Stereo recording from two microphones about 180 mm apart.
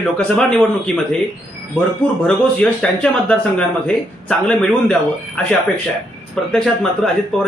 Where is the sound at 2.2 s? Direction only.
5° left (ahead or behind).